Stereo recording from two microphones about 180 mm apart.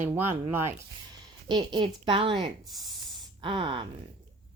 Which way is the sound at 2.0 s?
30° right (ahead or behind).